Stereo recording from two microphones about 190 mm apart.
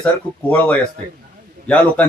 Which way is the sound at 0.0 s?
5° left (ahead or behind).